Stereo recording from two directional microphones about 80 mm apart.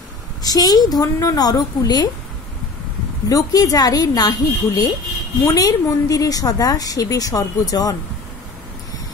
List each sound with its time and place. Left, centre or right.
0.4 s a woman's voice: left
3.3 s a woman's voice: left